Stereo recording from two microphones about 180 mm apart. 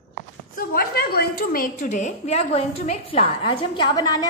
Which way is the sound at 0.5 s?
55° left (ahead or behind).